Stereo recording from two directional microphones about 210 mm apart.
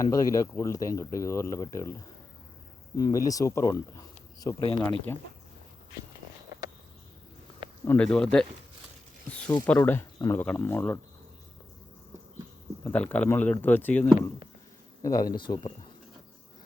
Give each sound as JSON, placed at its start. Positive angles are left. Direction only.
{"t": 0.0, "sound": "speech", "side_deg": 15}
{"t": 3.0, "sound": "speech", "side_deg": 15}
{"t": 7.9, "sound": "speech", "side_deg": 5}
{"t": 9.6, "sound": "speech", "side_deg": 10}
{"t": 12.8, "sound": "speech", "side_deg": 10}